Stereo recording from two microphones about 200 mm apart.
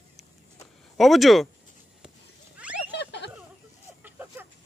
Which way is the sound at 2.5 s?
5° right (ahead or behind).